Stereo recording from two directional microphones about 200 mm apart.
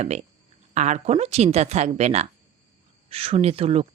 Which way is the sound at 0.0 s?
35° right (ahead or behind).